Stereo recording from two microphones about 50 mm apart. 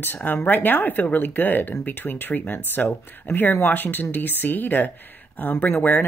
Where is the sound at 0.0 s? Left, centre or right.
Left.